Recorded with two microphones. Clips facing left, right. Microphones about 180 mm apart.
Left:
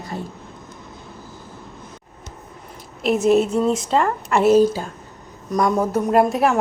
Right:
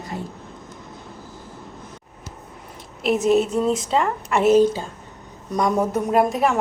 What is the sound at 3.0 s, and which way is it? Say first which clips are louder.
A woman's voice: left 2 dB; centre (ahead or behind).